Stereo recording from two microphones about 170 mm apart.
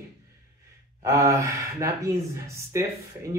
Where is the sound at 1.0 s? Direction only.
20° right (ahead or behind).